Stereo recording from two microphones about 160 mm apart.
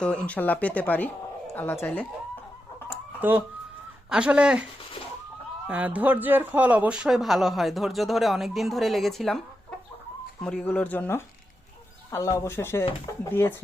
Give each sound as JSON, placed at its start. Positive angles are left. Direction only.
{"t": 0.0, "sound": "speech", "side_deg": 5}
{"t": 3.2, "sound": "speech", "side_deg": -10}
{"t": 10.4, "sound": "speech", "side_deg": 10}